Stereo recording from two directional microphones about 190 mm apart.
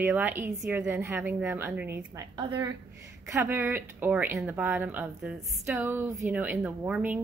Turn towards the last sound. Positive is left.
turn(degrees=-10)  # may be behind; listen again after turning